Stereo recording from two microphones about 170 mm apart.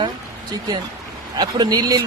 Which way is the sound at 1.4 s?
25° right (ahead or behind).